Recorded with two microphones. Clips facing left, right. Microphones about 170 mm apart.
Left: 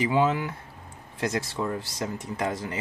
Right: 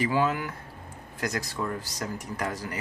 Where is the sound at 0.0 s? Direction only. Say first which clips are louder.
Left 2 dB; 25° left (ahead or behind).